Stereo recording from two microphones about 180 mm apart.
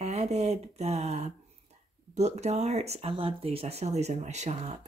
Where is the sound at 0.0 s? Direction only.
35° right (ahead or behind).